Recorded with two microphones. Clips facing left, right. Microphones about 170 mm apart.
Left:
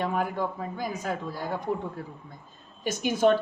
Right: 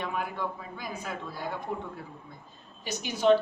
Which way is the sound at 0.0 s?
40° left (ahead or behind).